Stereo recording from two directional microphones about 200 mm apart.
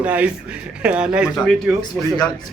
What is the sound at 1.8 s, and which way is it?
Speech, 20° left (ahead or behind).